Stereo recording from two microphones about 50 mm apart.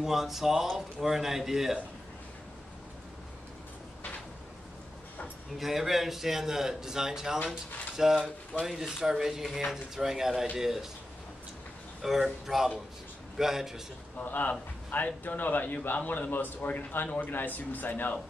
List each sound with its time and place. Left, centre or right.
0.0 s speech: centre
5.6 s speech: centre
12.0 s speech: centre
14.1 s a man's voice: left